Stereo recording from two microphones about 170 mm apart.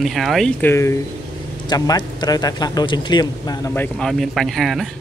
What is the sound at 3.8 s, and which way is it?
Speech, 5° left (ahead or behind).